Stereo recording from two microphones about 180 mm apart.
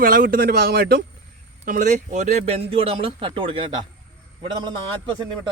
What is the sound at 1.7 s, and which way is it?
A man's voice, 45° right (ahead or behind).